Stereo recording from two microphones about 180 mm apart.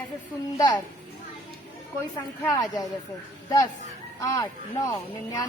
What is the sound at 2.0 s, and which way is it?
Speech, 15° left (ahead or behind).